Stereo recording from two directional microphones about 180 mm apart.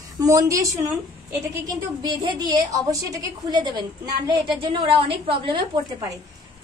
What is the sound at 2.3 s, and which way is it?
A woman's voice, 20° right (ahead or behind).